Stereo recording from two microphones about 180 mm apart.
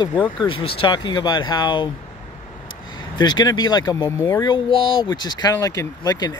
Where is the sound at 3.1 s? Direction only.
25° left (ahead or behind).